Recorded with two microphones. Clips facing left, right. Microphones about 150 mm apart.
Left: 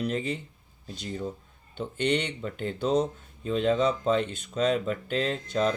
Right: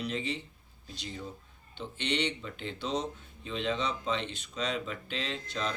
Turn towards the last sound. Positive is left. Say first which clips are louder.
# left 9 dB
turn(degrees=45)  # may be behind; listen again after turning